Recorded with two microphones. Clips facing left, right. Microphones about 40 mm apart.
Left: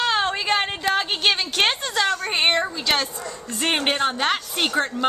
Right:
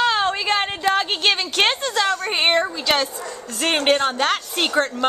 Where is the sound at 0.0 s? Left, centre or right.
Centre.